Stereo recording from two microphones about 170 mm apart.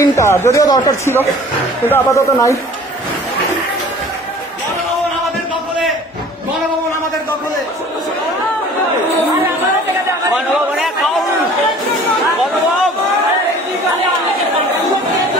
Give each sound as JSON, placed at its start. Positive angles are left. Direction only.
{"t": 0.0, "sound": "speech", "side_deg": 15}